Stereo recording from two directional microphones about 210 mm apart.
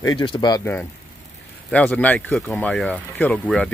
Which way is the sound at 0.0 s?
20° left (ahead or behind).